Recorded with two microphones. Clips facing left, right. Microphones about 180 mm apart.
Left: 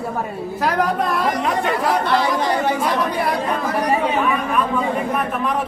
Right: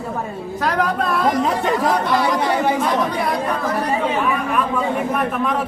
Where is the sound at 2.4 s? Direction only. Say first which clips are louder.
Right 1 dB; 10° right (ahead or behind).